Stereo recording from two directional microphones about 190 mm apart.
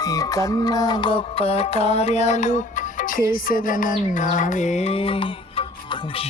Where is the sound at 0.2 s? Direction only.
20° left (ahead or behind); by 4.7 s 40° left (ahead or behind).